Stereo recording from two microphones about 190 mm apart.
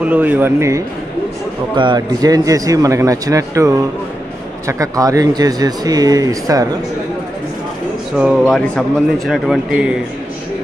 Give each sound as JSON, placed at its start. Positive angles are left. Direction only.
{"t": 0.0, "sound": "speech", "side_deg": -10}
{"t": 8.2, "sound": "speech", "side_deg": 0}